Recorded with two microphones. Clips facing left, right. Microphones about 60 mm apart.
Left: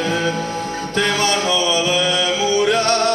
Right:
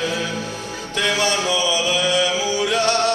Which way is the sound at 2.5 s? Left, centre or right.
Left.